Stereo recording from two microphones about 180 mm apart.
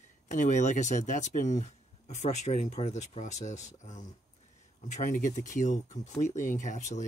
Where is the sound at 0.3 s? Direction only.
45° left (ahead or behind).